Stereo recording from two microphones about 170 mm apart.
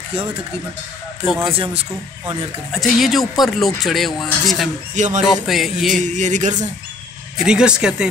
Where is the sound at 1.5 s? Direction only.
35° right (ahead or behind).